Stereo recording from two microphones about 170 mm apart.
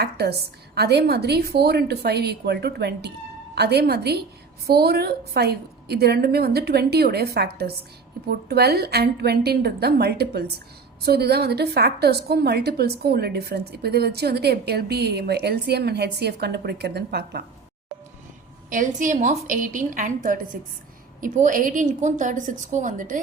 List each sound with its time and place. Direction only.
0.0 s a woman's voice: 70° right (ahead or behind)
18.7 s a woman's voice: 50° right (ahead or behind)